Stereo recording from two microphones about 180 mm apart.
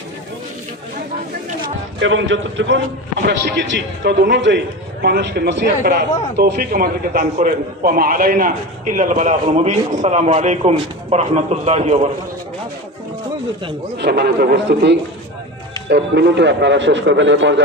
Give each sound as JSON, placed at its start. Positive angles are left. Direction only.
{"t": 2.0, "sound": "a man's voice", "side_deg": -90}
{"t": 5.0, "sound": "a man's voice", "side_deg": -65}
{"t": 13.9, "sound": "a man's voice", "side_deg": -70}